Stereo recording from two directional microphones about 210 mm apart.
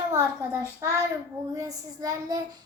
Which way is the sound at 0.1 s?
15° right (ahead or behind).